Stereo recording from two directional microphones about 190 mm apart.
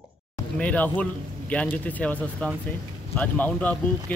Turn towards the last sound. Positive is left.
turn(degrees=10)  # may be behind; listen again after turning